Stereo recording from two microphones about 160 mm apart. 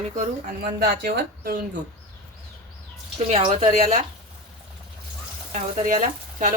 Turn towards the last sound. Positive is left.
turn(degrees=-50)  # may be behind; listen again after turning